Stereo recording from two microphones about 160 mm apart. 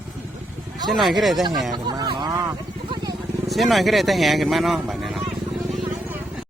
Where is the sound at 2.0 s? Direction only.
25° right (ahead or behind).